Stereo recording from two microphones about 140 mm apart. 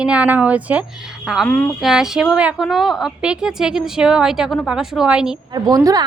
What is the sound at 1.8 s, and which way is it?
A woman's voice, centre (ahead or behind).